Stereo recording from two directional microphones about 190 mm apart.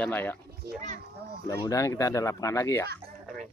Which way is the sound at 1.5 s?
15° left (ahead or behind).